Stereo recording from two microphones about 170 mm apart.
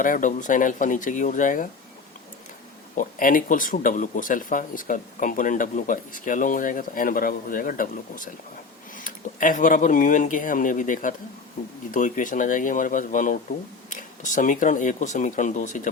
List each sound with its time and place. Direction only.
0.0 s speech: 50° left (ahead or behind)
3.0 s speech: 55° left (ahead or behind)